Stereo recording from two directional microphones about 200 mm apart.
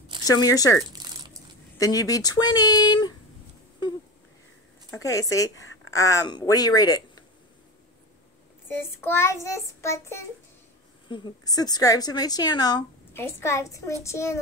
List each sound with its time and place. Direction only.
0.2 s speech: 20° left (ahead or behind)
1.8 s a woman's voice: 20° left (ahead or behind)
4.9 s child singing: 15° left (ahead or behind)
5.9 s speech: 15° left (ahead or behind)
8.7 s child singing: 10° left (ahead or behind)
11.1 s a woman's voice: 25° left (ahead or behind)
14.0 s child singing: 15° left (ahead or behind)